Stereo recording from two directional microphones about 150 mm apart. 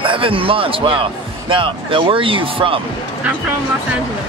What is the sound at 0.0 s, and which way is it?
A man's voice, 35° right (ahead or behind).